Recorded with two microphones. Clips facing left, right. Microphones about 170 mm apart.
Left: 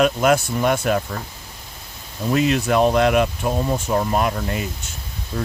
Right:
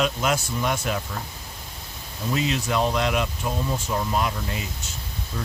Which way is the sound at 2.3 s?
55° left (ahead or behind).